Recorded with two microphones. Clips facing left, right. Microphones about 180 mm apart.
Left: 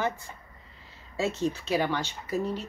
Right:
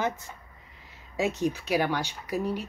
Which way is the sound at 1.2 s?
15° right (ahead or behind).